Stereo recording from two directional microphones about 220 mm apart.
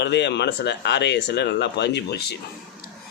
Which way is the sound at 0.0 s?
50° left (ahead or behind).